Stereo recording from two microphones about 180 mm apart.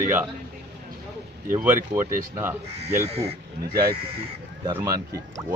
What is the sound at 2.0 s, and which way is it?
Speech, 50° right (ahead or behind).